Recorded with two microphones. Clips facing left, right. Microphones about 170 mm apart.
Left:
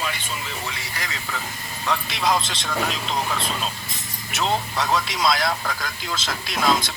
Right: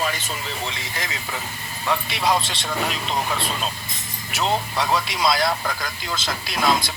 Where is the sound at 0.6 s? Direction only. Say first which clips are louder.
Right 2 dB; 20° right (ahead or behind).